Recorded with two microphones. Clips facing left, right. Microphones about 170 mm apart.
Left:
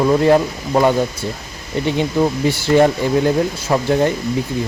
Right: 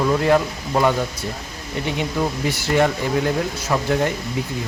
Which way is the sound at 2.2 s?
30° left (ahead or behind).